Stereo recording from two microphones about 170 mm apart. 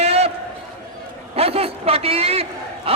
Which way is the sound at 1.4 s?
35° right (ahead or behind).